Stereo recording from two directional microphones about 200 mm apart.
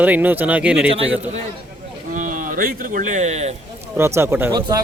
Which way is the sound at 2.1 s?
40° right (ahead or behind).